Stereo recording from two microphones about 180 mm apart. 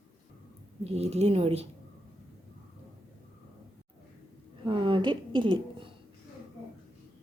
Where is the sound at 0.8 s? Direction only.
35° right (ahead or behind).